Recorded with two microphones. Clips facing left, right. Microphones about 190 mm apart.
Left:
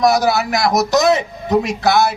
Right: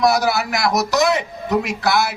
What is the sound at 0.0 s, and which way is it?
A man's voice, 20° left (ahead or behind).